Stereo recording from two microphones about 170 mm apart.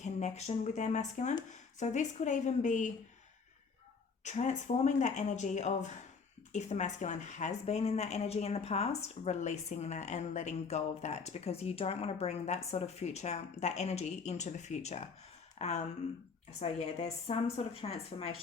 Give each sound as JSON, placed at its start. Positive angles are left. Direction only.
{"t": 0.0, "sound": "speech", "side_deg": 40}
{"t": 4.2, "sound": "a woman's voice", "side_deg": 45}